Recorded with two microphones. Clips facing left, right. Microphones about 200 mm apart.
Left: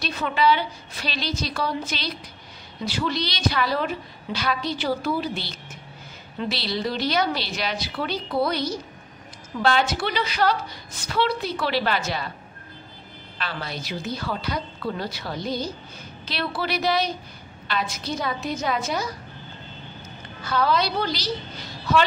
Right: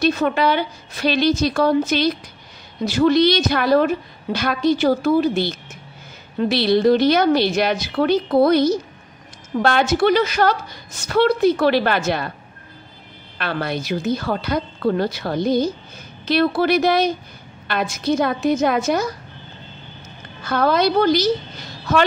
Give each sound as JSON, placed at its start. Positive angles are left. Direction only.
{"t": 0.0, "sound": "a woman's voice", "side_deg": -45}
{"t": 13.4, "sound": "a woman's voice", "side_deg": -60}
{"t": 20.4, "sound": "a woman's voice", "side_deg": -50}